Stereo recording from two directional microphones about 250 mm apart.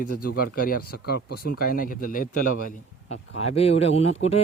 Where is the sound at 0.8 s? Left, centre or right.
Left.